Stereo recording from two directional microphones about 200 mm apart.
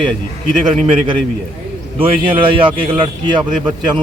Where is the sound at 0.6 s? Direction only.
25° right (ahead or behind).